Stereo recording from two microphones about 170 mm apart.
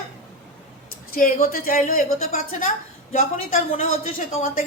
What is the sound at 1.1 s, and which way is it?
A woman's voice, 60° left (ahead or behind).